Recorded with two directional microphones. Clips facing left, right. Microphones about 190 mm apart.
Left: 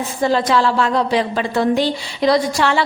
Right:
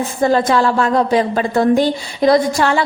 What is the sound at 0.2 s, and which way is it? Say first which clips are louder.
A woman's voice: right 2 dB; 50° right (ahead or behind).